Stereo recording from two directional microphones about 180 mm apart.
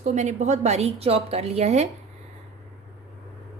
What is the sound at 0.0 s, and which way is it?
A woman's voice, 40° right (ahead or behind).